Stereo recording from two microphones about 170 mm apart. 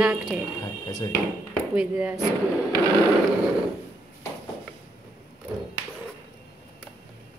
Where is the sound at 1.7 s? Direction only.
10° right (ahead or behind).